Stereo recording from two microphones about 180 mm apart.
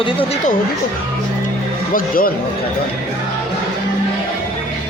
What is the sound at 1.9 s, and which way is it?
Speech, 50° left (ahead or behind).